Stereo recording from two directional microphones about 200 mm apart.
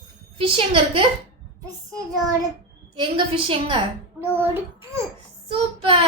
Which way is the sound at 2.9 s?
25° right (ahead or behind).